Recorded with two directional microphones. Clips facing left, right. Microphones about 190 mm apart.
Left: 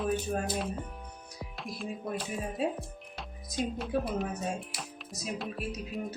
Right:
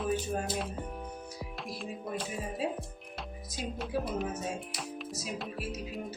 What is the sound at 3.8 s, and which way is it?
Speech, centre (ahead or behind).